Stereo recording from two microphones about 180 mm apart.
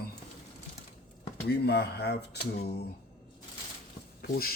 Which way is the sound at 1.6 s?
65° left (ahead or behind).